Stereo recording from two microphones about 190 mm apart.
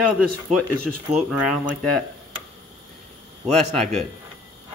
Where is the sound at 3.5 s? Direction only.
5° left (ahead or behind).